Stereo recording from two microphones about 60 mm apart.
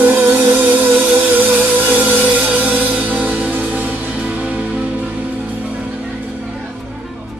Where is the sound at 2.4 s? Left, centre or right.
Right.